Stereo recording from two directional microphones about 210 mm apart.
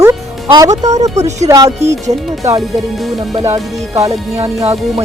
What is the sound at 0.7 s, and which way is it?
Speech, 35° right (ahead or behind).